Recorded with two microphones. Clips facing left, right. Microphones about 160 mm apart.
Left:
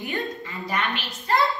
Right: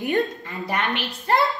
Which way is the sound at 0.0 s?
55° right (ahead or behind).